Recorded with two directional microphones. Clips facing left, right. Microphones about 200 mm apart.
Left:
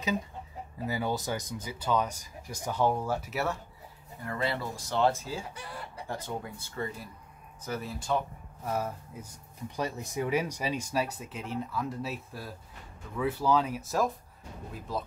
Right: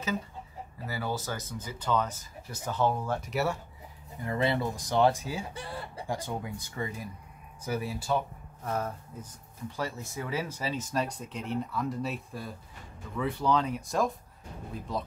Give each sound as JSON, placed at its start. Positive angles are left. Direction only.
{"t": 0.8, "sound": "speech", "side_deg": 15}
{"t": 4.2, "sound": "speech", "side_deg": -20}
{"t": 8.6, "sound": "speech", "side_deg": 10}